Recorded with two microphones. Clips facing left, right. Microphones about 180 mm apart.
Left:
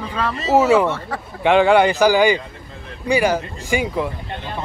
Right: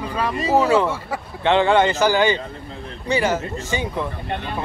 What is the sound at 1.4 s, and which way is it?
Speech, 15° left (ahead or behind).